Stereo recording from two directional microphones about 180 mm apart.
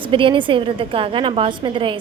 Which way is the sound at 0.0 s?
30° right (ahead or behind).